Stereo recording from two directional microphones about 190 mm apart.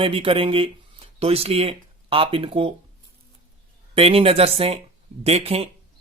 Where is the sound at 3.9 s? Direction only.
30° right (ahead or behind).